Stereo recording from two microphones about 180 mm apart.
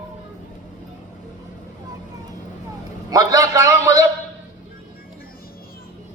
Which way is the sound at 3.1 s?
20° right (ahead or behind).